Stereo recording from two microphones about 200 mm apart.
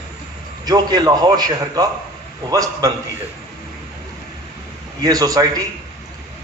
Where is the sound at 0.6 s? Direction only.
20° right (ahead or behind).